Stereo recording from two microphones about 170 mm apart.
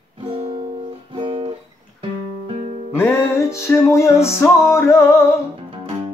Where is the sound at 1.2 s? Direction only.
30° right (ahead or behind).